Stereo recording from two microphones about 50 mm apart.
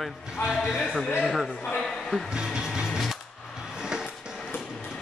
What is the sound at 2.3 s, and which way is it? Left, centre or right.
Music, centre.